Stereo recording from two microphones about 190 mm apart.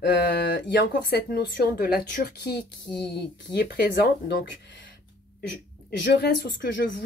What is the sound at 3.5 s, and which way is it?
Speech, 55° left (ahead or behind).